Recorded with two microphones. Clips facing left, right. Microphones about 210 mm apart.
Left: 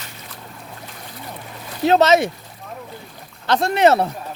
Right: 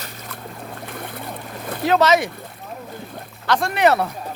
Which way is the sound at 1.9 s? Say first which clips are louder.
Left 2 dB; 25° left (ahead or behind).